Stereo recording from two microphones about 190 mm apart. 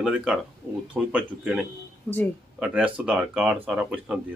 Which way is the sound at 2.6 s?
5° right (ahead or behind).